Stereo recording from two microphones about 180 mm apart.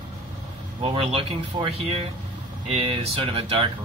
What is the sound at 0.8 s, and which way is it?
A man's voice, 30° right (ahead or behind).